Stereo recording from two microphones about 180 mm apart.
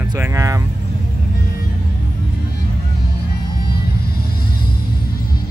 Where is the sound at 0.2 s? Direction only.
15° right (ahead or behind).